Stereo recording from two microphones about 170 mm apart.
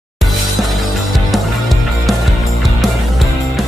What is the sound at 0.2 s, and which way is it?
Music, centre (ahead or behind).